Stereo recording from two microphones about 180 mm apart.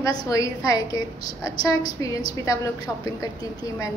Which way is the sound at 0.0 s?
20° left (ahead or behind).